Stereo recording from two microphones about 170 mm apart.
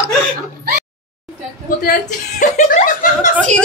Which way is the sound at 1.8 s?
50° left (ahead or behind).